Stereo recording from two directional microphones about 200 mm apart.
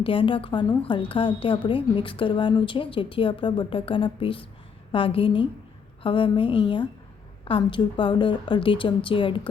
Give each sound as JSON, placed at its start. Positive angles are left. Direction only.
{"t": 0.0, "sound": "a woman's voice", "side_deg": 25}